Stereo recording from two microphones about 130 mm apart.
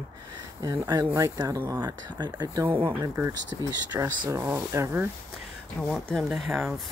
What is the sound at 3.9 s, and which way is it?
Speech, 20° right (ahead or behind).